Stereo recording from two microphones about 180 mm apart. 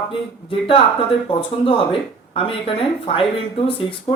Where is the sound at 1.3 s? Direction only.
30° left (ahead or behind).